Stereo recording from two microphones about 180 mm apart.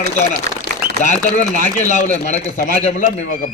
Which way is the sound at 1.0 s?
45° left (ahead or behind).